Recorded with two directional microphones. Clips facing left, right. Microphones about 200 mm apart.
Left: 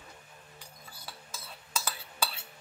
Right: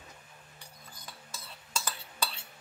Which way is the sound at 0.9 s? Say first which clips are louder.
Left 2 dB; 10° left (ahead or behind).